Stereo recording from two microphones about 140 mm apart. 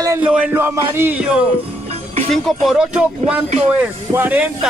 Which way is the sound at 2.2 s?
5° left (ahead or behind).